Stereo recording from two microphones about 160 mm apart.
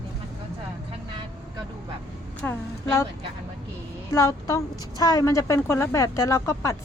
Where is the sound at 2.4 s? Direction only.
15° left (ahead or behind).